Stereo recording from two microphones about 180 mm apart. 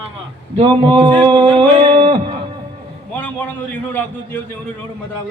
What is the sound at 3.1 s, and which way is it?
A man's voice, 10° left (ahead or behind).